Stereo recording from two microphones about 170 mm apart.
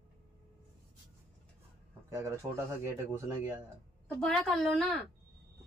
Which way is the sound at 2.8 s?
15° right (ahead or behind).